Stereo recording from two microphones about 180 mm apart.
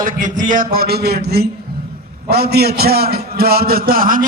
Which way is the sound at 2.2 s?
60° right (ahead or behind).